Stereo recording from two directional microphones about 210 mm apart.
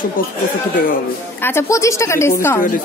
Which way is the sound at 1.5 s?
15° left (ahead or behind).